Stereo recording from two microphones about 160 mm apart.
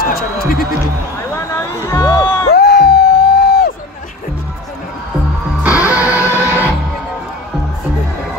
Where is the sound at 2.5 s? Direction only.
85° left.